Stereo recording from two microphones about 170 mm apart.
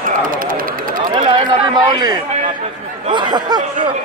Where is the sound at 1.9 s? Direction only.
25° right (ahead or behind).